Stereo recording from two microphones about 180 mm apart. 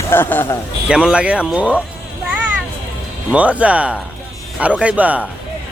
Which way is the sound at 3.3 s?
5° right (ahead or behind).